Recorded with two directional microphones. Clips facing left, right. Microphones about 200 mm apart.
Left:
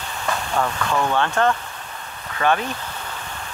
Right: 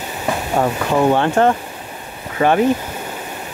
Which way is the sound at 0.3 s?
20° right (ahead or behind).